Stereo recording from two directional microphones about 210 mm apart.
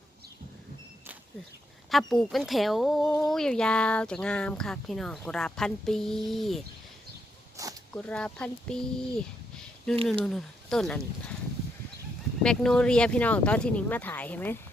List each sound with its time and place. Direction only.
1.9 s speech: centre (ahead or behind)
7.6 s zipper: 15° right (ahead or behind)
7.9 s speech: 5° left (ahead or behind)
10.2 s speech: centre (ahead or behind)
12.4 s speech: 5° left (ahead or behind)